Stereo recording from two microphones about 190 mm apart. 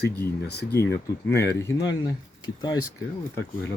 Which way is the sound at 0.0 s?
60° left (ahead or behind).